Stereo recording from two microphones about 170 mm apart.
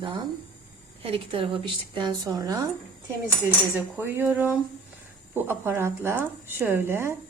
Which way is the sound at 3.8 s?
10° right (ahead or behind).